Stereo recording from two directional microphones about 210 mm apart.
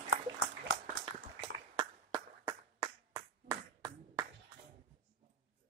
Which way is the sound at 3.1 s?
20° right (ahead or behind).